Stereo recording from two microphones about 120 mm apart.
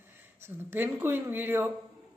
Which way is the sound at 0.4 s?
15° right (ahead or behind).